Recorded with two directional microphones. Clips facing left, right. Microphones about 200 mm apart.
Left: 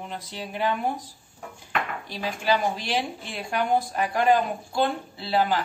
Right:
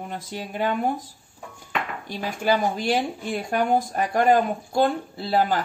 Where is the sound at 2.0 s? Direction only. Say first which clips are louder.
Right 4 dB; 45° right (ahead or behind).